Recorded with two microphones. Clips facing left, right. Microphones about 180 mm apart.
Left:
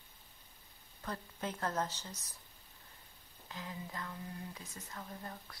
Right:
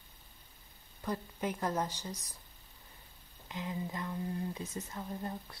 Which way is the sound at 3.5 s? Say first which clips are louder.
Right 6 dB; 20° right (ahead or behind).